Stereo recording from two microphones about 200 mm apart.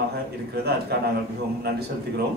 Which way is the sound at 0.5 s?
55° right (ahead or behind).